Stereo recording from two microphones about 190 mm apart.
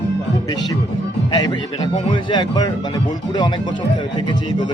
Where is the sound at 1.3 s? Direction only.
20° left (ahead or behind).